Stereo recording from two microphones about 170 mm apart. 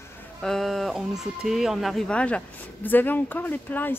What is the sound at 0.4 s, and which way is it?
Speech, centre (ahead or behind).